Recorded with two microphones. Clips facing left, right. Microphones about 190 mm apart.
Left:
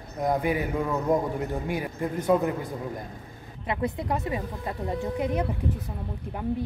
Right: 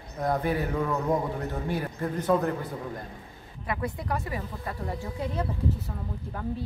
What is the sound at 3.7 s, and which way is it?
Speech, 20° left (ahead or behind).